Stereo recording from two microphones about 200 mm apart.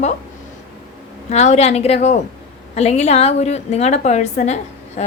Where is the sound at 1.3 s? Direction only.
35° left (ahead or behind).